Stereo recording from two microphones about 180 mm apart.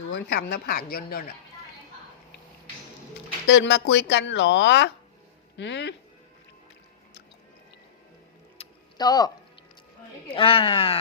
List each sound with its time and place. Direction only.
0.1 s speech: 65° left (ahead or behind)
3.4 s speech: 75° left (ahead or behind)
8.6 s a sound: 35° left (ahead or behind)
9.0 s speech: 20° left (ahead or behind)
10.3 s speech: 30° left (ahead or behind)